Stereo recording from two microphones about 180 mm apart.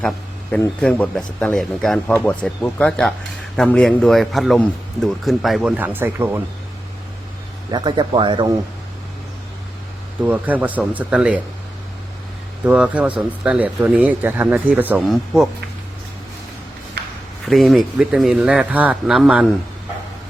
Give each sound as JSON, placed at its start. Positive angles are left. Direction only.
{"t": 0.8, "sound": "speech", "side_deg": 5}
{"t": 7.7, "sound": "speech", "side_deg": -25}
{"t": 10.2, "sound": "speech", "side_deg": -10}
{"t": 12.6, "sound": "speech", "side_deg": -5}
{"t": 17.4, "sound": "speech", "side_deg": 0}